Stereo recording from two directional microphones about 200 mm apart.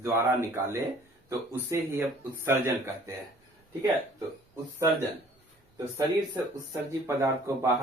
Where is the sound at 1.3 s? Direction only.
15° right (ahead or behind).